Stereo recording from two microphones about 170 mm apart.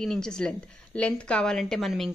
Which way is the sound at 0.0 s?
5° left (ahead or behind).